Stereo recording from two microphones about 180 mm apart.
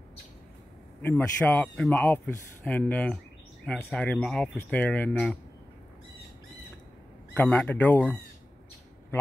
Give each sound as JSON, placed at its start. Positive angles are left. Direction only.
{"t": 1.0, "sound": "speech", "side_deg": 10}
{"t": 7.3, "sound": "speech", "side_deg": 10}